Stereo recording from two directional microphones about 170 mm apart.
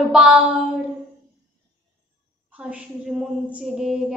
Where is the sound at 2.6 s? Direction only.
5° right (ahead or behind).